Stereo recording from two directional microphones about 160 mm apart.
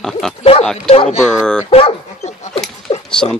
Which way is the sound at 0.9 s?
35° left (ahead or behind).